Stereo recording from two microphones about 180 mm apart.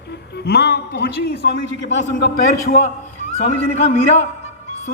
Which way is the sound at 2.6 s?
50° left (ahead or behind).